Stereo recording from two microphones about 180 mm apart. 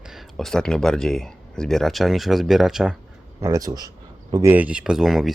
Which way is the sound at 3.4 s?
15° right (ahead or behind).